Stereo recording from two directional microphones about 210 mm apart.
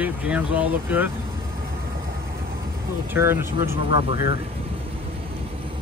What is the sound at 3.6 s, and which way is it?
Speech, 25° right (ahead or behind).